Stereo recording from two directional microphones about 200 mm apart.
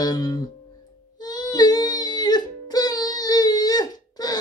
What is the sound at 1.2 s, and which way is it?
Music, 20° left (ahead or behind).